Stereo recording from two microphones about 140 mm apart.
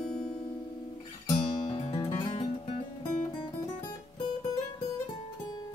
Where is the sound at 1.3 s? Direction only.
30° left (ahead or behind).